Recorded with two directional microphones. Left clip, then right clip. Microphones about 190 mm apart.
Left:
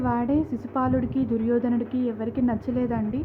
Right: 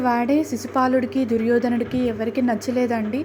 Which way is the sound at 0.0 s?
10° right (ahead or behind).